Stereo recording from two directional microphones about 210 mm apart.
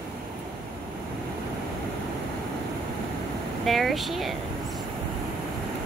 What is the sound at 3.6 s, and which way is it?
Speech, centre (ahead or behind).